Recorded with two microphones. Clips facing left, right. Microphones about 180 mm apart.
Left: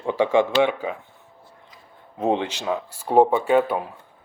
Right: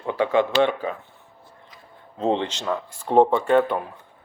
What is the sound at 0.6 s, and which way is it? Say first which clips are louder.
Speech: even; 10° left (ahead or behind).